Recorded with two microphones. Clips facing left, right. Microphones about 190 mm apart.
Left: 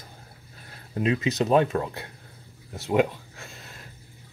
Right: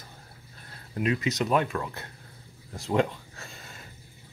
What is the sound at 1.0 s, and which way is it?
Speech, 20° left (ahead or behind).